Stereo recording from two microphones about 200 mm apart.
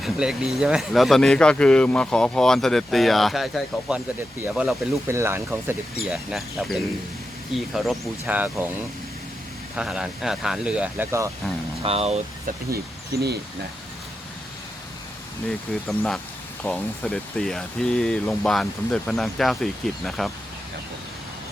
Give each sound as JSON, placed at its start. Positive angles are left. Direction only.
{"t": 0.0, "sound": "speech", "side_deg": 0}
{"t": 9.7, "sound": "speech", "side_deg": -5}
{"t": 11.8, "sound": "speech", "side_deg": -30}
{"t": 12.7, "sound": "speech", "side_deg": -50}
{"t": 15.9, "sound": "speech", "side_deg": 0}